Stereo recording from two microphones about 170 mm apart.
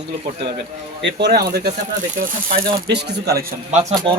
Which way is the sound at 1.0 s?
75° right (ahead or behind).